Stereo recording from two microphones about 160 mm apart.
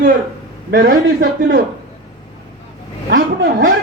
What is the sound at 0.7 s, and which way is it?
Speech, 75° right (ahead or behind).